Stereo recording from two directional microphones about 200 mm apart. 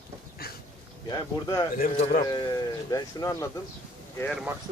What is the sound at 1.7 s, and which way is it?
Speech, 45° left (ahead or behind).